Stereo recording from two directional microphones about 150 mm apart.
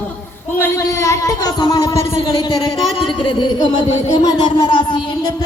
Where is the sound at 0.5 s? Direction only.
15° left (ahead or behind).